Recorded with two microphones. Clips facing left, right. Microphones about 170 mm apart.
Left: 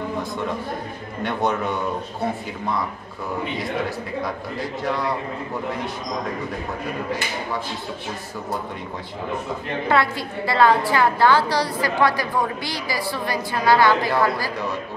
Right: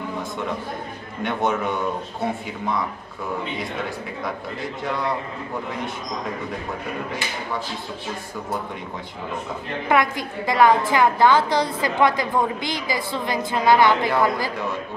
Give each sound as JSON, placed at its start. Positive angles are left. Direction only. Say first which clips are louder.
{"t": 1.2, "sound": "a man's voice", "louder": "even", "side_deg": 0}
{"t": 4.8, "sound": "a man's voice", "louder": "left 1 dB", "side_deg": 0}
{"t": 9.8, "sound": "a woman's voice", "louder": "right 1 dB", "side_deg": -15}